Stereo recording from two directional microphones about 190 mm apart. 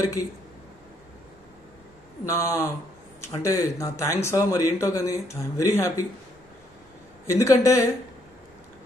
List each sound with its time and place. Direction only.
2.2 s speech: 15° left (ahead or behind)
7.2 s speech: 15° left (ahead or behind)